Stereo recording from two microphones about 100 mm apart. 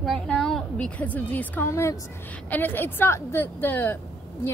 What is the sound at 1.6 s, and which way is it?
A woman's voice, 30° left (ahead or behind).